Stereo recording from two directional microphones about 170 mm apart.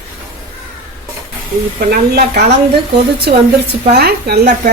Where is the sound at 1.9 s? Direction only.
60° right (ahead or behind).